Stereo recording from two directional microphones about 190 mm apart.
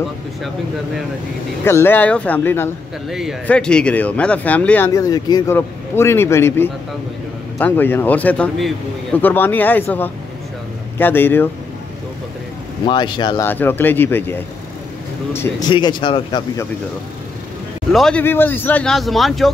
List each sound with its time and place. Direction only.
1.6 s speech: 10° left (ahead or behind)
3.1 s speech: centre (ahead or behind)
12.8 s speech: 25° left (ahead or behind)
13.5 s speech: 10° left (ahead or behind)
15.7 s speech: 25° left (ahead or behind)
17.9 s speech: 5° left (ahead or behind)